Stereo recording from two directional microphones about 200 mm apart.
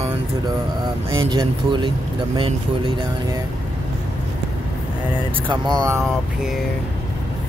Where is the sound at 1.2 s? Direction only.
25° right (ahead or behind).